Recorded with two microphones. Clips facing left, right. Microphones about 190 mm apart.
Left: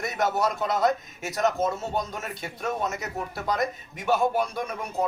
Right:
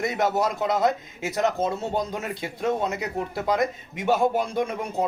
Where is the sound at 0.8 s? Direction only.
25° right (ahead or behind).